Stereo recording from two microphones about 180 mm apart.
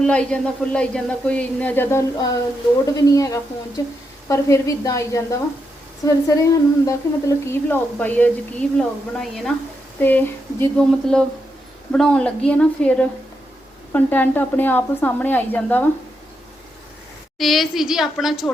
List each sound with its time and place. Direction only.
0.0 s a woman's voice: 5° left (ahead or behind)
17.3 s a woman's voice: centre (ahead or behind)